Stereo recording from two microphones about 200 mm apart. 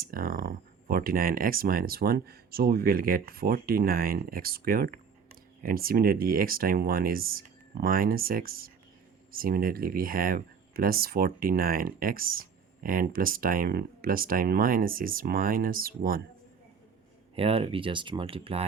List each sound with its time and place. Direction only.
0.0 s speech: 45° right (ahead or behind)
17.3 s speech: 30° right (ahead or behind)